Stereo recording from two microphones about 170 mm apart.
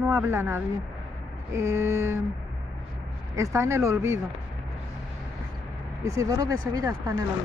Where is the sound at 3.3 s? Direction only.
15° right (ahead or behind).